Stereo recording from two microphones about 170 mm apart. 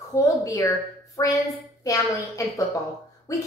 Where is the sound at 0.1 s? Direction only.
20° left (ahead or behind).